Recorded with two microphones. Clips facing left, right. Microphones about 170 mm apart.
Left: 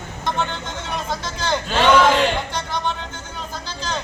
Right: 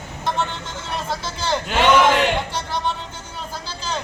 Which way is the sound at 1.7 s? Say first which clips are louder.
Left 1 dB; 15° right (ahead or behind).